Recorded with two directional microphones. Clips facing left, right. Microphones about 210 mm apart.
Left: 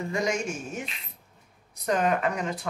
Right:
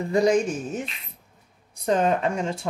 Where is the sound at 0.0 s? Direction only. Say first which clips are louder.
Right 8 dB; 35° right (ahead or behind).